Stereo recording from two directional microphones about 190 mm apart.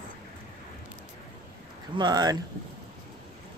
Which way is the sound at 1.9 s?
20° right (ahead or behind).